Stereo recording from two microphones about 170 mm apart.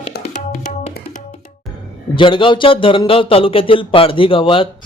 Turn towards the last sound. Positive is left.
turn(degrees=30)  # may be behind; listen again after turning